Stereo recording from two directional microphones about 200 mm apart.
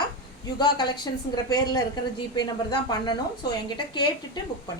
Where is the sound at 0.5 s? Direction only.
20° left (ahead or behind).